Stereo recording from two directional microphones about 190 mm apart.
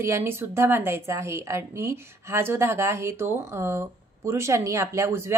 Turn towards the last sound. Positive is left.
turn(degrees=-15)  # may be behind; listen again after turning